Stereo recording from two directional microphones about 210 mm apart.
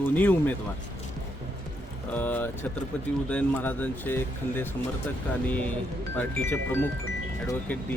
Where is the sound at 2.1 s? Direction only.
10° left (ahead or behind).